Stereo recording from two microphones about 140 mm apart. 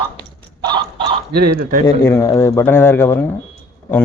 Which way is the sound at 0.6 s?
35° right (ahead or behind).